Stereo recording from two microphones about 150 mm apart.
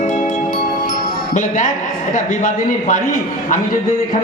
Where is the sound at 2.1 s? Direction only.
55° left (ahead or behind).